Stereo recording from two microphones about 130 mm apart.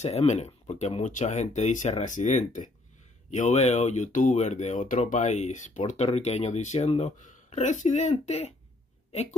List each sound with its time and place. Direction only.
0.0 s speech: 55° left (ahead or behind)
8.3 s speech: 55° left (ahead or behind)